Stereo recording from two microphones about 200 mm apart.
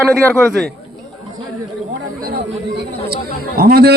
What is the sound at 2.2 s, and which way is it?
Chatter, 55° right (ahead or behind).